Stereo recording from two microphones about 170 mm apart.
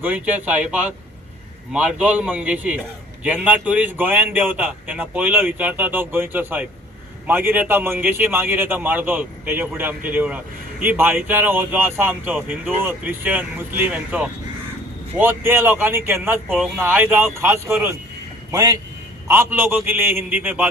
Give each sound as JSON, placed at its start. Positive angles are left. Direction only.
{"t": 0.0, "sound": "a man's voice", "side_deg": -10}